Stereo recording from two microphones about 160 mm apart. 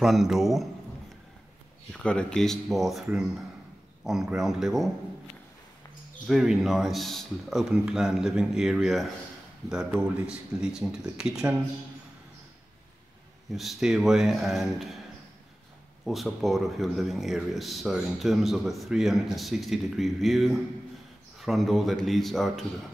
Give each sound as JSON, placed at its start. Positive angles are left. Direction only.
{"t": 0.0, "sound": "speech", "side_deg": 0}
{"t": 1.9, "sound": "speech", "side_deg": 5}
{"t": 6.2, "sound": "speech", "side_deg": 0}
{"t": 13.5, "sound": "speech", "side_deg": 0}
{"t": 16.1, "sound": "speech", "side_deg": 0}